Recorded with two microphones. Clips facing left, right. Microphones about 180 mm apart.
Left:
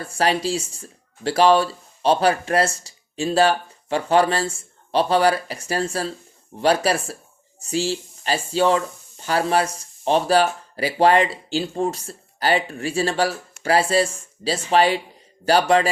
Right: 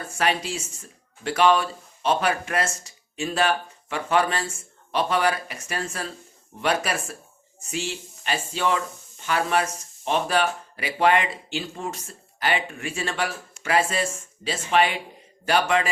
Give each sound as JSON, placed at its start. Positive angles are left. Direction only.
{"t": 0.0, "sound": "speech", "side_deg": 35}